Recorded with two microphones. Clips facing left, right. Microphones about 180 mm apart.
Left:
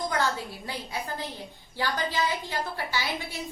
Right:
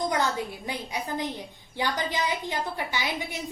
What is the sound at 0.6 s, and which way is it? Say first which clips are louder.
A woman's voice: right 2 dB; 20° right (ahead or behind).